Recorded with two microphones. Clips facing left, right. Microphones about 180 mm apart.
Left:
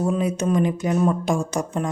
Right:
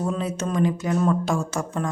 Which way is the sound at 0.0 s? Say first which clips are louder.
Left 4 dB; 15° left (ahead or behind).